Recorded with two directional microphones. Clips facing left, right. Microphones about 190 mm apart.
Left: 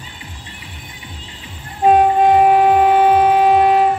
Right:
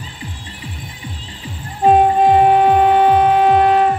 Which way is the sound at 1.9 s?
Centre (ahead or behind).